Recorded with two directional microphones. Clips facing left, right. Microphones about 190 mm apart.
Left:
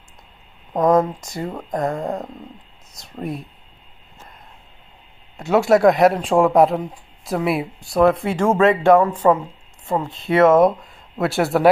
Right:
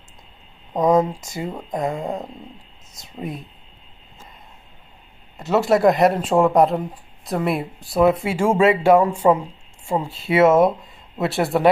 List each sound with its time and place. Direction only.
0.7 s speech: 15° right (ahead or behind)
2.0 s speech: 5° right (ahead or behind)
5.4 s speech: centre (ahead or behind)